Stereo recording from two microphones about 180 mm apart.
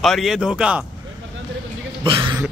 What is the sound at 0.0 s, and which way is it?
Speech, centre (ahead or behind).